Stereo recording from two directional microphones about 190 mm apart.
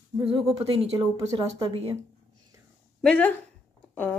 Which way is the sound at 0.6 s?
30° right (ahead or behind).